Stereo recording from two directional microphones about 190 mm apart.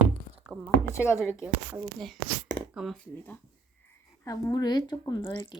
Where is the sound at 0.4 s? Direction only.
5° right (ahead or behind).